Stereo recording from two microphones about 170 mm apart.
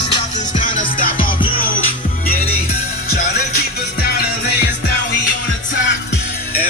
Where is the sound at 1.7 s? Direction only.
55° left (ahead or behind).